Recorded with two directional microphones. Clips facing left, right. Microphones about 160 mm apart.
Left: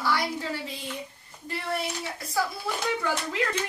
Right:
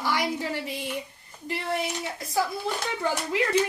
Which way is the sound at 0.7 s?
15° right (ahead or behind).